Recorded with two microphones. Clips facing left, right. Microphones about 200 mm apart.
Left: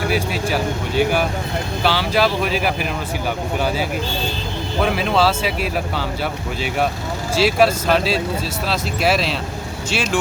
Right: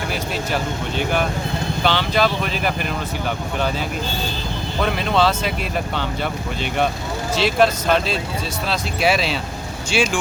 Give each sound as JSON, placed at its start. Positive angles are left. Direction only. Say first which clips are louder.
{"t": 0.1, "sound": "speech", "louder": "left 3 dB", "side_deg": 5}
{"t": 4.8, "sound": "speech", "louder": "left 1 dB", "side_deg": 5}
{"t": 7.4, "sound": "speech", "louder": "left 1 dB", "side_deg": 5}